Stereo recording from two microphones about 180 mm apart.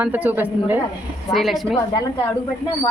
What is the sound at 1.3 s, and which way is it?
Speech, centre (ahead or behind).